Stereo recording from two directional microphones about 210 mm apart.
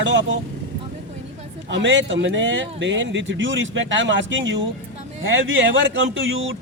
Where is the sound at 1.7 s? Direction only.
60° right (ahead or behind).